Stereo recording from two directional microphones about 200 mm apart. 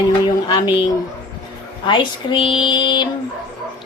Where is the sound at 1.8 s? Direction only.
25° left (ahead or behind).